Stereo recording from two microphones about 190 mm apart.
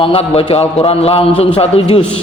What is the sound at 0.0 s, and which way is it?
Speech, 30° left (ahead or behind).